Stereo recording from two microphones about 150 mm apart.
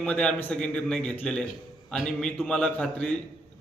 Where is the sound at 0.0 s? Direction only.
5° left (ahead or behind).